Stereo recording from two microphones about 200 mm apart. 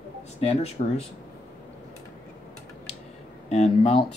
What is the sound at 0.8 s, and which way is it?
Speech, 40° left (ahead or behind).